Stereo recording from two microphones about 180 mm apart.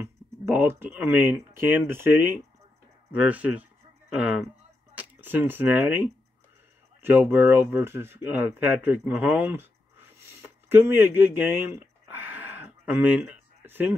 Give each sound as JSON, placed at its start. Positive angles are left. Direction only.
{"t": 0.0, "sound": "speech", "side_deg": -10}
{"t": 4.9, "sound": "a sound", "side_deg": -10}
{"t": 5.5, "sound": "speech", "side_deg": -10}